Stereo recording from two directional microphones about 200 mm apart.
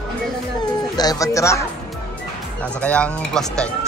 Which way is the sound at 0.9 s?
20° left (ahead or behind).